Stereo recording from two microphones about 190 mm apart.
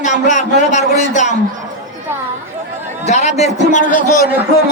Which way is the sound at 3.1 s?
35° left (ahead or behind).